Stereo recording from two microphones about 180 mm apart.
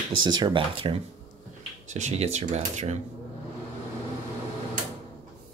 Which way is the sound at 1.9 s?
40° right (ahead or behind).